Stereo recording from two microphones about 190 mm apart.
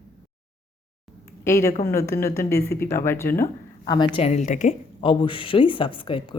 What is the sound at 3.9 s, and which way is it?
Speech, 25° left (ahead or behind).